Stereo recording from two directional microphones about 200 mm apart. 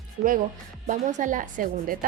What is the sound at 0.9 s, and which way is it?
Speech, 40° right (ahead or behind).